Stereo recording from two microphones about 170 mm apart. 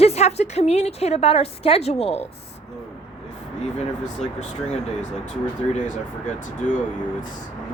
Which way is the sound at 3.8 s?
40° left (ahead or behind).